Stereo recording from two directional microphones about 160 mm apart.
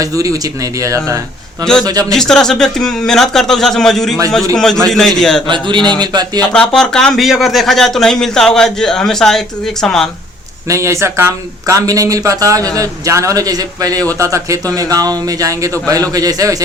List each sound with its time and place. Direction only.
0.0 s speech: 20° right (ahead or behind)
2.1 s speech: 5° left (ahead or behind)
5.5 s speech: 30° right (ahead or behind)
6.4 s speech: 5° left (ahead or behind)
10.7 s speech: 20° right (ahead or behind)